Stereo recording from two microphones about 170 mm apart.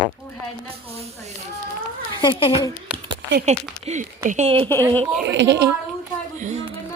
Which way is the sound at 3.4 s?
40° right (ahead or behind).